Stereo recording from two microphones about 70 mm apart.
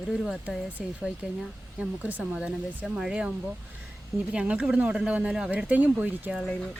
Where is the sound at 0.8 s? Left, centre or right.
Centre.